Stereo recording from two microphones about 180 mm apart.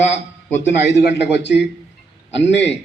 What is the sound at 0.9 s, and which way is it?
A man's voice, 75° left (ahead or behind).